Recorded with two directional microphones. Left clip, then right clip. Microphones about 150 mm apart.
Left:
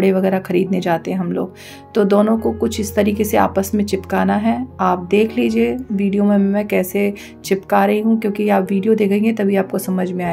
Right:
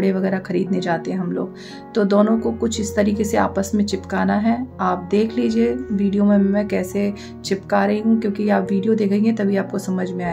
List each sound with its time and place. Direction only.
0.0 s speech: 15° left (ahead or behind)